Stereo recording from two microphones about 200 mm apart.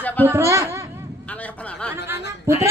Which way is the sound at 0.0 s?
10° left (ahead or behind).